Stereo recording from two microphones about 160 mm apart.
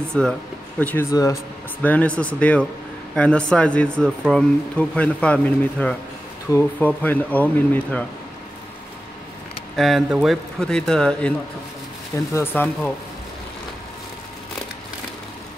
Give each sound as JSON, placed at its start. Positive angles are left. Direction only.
{"t": 0.1, "sound": "speech", "side_deg": 5}
{"t": 1.1, "sound": "speech", "side_deg": 20}
{"t": 1.8, "sound": "speech", "side_deg": 10}
{"t": 9.8, "sound": "speech", "side_deg": 0}
{"t": 12.4, "sound": "speech", "side_deg": 10}